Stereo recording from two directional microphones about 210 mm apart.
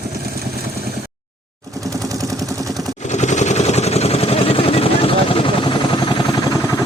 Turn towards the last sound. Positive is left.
turn(degrees=25)  # may be behind; listen again after turning